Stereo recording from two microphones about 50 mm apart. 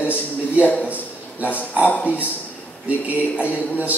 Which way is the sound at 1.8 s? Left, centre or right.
Left.